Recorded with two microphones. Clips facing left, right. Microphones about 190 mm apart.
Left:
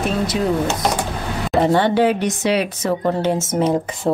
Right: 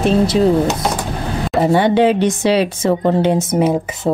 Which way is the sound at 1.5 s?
5° right (ahead or behind).